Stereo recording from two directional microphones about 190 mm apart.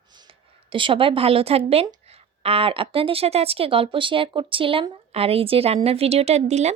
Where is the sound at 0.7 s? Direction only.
25° right (ahead or behind).